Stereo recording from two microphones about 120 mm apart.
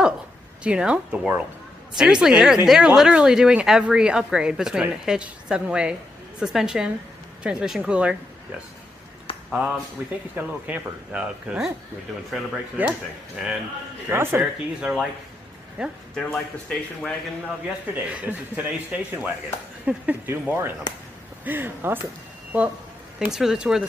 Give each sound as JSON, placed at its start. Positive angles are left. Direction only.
{"t": 0.7, "sound": "speech", "side_deg": -10}
{"t": 9.3, "sound": "a sound", "side_deg": 50}
{"t": 10.0, "sound": "speech", "side_deg": -15}
{"t": 12.8, "sound": "speech", "side_deg": -15}
{"t": 14.1, "sound": "speech", "side_deg": -20}
{"t": 14.4, "sound": "speech", "side_deg": -5}
{"t": 16.2, "sound": "speech", "side_deg": 5}
{"t": 17.6, "sound": "speech", "side_deg": -10}
{"t": 23.1, "sound": "speech", "side_deg": -5}